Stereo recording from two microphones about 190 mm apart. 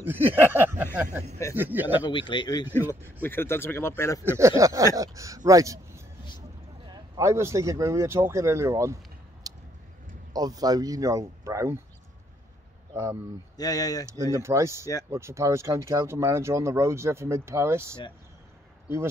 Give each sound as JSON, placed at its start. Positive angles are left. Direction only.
{"t": 0.0, "sound": "a sound", "side_deg": -10}
{"t": 1.5, "sound": "speech", "side_deg": -10}
{"t": 2.0, "sound": "speech", "side_deg": 25}
{"t": 2.6, "sound": "speech", "side_deg": -10}
{"t": 3.1, "sound": "speech", "side_deg": 10}
{"t": 4.2, "sound": "a man's voice", "side_deg": -15}
{"t": 9.5, "sound": "a sound", "side_deg": -20}
{"t": 10.3, "sound": "speech", "side_deg": -20}
{"t": 12.9, "sound": "speech", "side_deg": -15}
{"t": 13.6, "sound": "speech", "side_deg": 20}
{"t": 14.0, "sound": "speech", "side_deg": -15}